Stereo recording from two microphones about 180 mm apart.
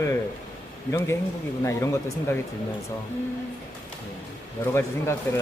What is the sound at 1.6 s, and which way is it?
Speech, 15° left (ahead or behind).